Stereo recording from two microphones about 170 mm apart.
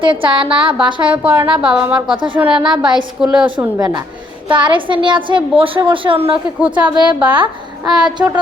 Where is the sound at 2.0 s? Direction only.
30° right (ahead or behind).